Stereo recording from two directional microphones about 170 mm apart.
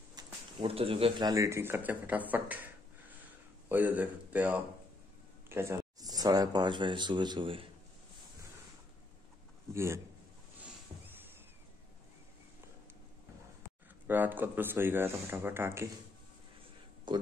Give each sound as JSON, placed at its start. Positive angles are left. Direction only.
{"t": 0.1, "sound": "speech", "side_deg": -30}
{"t": 9.8, "sound": "speech", "side_deg": -15}
{"t": 14.0, "sound": "speech", "side_deg": -10}
{"t": 17.1, "sound": "speech", "side_deg": -25}